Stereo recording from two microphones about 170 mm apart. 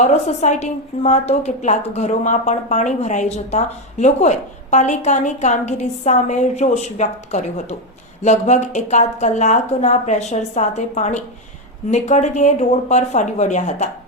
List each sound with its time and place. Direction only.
0.0 s a woman's voice: 40° left (ahead or behind)